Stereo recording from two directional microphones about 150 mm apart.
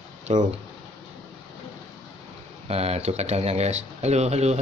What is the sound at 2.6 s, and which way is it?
Speech, 45° right (ahead or behind).